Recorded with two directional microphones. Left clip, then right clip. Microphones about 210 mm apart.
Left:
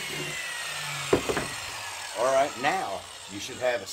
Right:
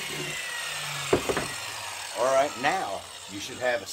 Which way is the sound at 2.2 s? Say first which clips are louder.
Even; 25° right (ahead or behind).